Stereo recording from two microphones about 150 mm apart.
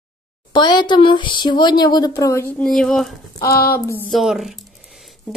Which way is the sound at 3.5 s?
85° left.